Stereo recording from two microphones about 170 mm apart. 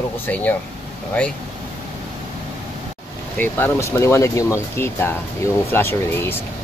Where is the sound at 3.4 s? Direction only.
15° left (ahead or behind).